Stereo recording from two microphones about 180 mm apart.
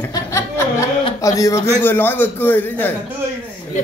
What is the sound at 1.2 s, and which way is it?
A woman's voice, 20° left (ahead or behind).